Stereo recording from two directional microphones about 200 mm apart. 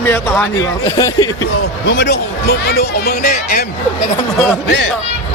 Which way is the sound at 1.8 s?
60° left (ahead or behind).